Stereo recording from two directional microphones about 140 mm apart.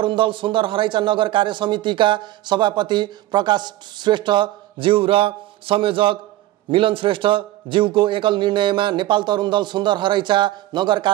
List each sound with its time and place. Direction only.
0.0 s a man's voice: 35° right (ahead or behind)